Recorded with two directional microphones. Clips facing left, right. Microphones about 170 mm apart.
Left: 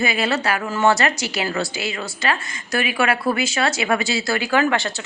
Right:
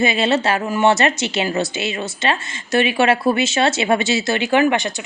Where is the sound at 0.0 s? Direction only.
25° right (ahead or behind).